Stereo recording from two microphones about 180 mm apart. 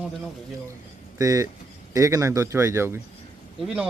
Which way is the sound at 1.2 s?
20° right (ahead or behind).